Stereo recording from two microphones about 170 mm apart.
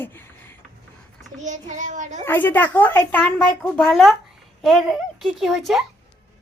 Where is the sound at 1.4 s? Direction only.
45° right (ahead or behind).